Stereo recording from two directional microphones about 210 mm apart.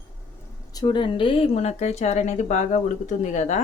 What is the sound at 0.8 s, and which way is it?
Speech, 20° left (ahead or behind).